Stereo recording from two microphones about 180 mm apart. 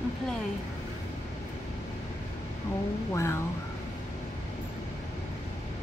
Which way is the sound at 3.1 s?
15° left (ahead or behind).